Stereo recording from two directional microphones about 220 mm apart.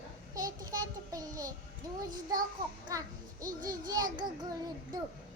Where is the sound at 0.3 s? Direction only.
15° right (ahead or behind).